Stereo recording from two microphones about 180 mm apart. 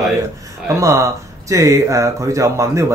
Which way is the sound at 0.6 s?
15° right (ahead or behind).